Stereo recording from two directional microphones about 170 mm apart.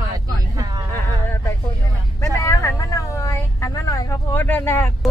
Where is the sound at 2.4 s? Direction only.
20° left (ahead or behind).